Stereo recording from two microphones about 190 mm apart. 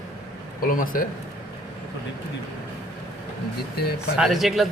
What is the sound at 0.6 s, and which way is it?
Speech, 45° left (ahead or behind).